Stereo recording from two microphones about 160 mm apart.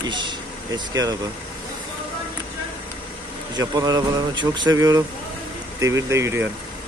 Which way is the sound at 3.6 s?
20° right (ahead or behind).